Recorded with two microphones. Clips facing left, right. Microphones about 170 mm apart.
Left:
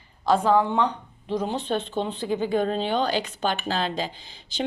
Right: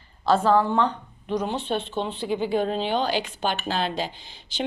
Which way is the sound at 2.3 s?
45° left (ahead or behind).